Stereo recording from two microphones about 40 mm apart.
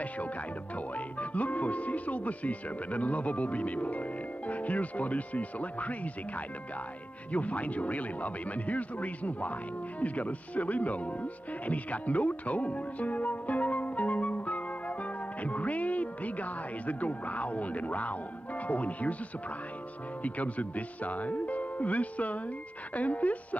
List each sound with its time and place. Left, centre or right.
0.7 s speech: left
15.4 s music: left
20.2 s speech: left